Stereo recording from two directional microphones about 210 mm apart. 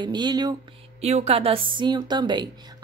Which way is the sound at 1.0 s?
30° right (ahead or behind).